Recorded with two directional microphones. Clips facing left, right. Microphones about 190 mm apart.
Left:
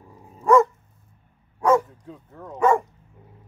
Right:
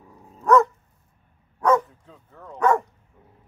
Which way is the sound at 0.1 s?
10° left (ahead or behind).